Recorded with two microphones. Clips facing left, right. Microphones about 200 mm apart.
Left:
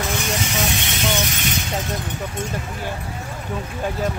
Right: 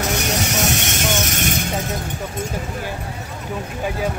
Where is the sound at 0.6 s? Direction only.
45° right (ahead or behind).